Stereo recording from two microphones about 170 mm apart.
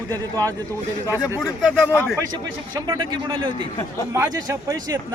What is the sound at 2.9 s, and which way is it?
A man's voice, 25° right (ahead or behind).